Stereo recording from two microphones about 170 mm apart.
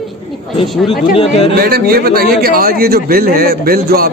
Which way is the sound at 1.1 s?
35° left (ahead or behind).